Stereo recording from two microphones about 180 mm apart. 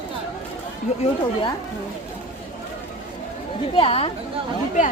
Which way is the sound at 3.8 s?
30° left (ahead or behind).